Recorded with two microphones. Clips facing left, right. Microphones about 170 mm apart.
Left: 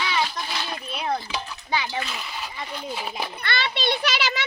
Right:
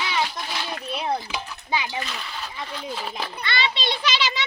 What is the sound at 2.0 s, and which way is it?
A child's voice, 5° left (ahead or behind).